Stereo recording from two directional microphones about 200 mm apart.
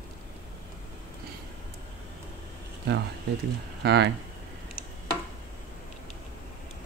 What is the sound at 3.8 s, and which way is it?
Speech, 55° right (ahead or behind).